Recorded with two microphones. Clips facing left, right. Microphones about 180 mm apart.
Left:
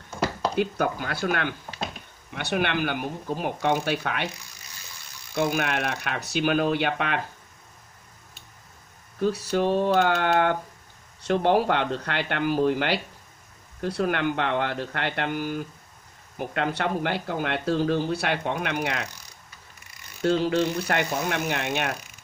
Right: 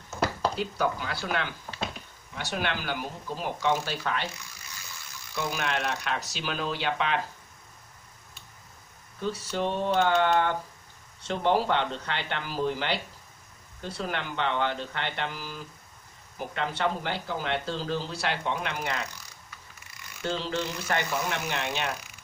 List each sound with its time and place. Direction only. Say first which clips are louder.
0.6 s speech: left 4 dB; 55° left (ahead or behind)
5.3 s speech: left 6 dB; 55° left (ahead or behind)
9.2 s speech: left 6 dB; 60° left (ahead or behind)
20.2 s speech: left 8 dB; 60° left (ahead or behind)